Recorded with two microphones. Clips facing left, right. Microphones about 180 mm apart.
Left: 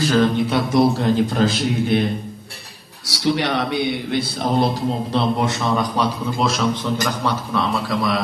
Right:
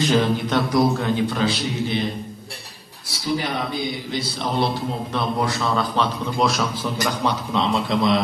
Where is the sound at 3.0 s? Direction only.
75° left (ahead or behind); by 4.7 s 50° left (ahead or behind).